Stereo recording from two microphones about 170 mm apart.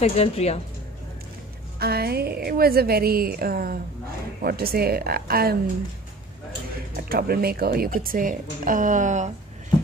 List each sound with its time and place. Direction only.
0.0 s speech: 40° left (ahead or behind)
1.8 s speech: 65° right (ahead or behind)
7.1 s speech: 60° right (ahead or behind); by 9.3 s 45° right (ahead or behind)